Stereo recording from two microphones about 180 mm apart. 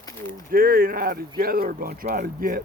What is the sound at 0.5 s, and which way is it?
Speech, 55° right (ahead or behind).